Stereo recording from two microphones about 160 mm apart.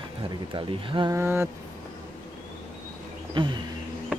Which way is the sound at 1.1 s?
15° right (ahead or behind).